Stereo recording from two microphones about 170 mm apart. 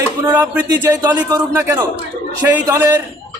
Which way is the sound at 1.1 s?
20° right (ahead or behind).